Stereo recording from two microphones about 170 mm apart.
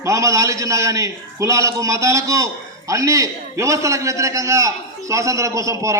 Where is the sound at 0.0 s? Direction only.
20° right (ahead or behind).